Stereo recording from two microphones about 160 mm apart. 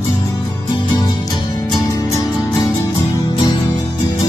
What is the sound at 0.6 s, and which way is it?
Music, 30° left (ahead or behind).